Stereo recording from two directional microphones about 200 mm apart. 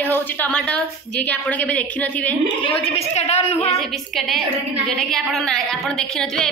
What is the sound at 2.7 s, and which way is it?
A woman's voice, 30° left (ahead or behind).